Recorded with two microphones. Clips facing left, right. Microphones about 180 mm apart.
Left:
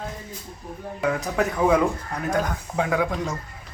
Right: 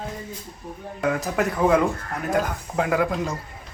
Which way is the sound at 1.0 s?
Centre (ahead or behind).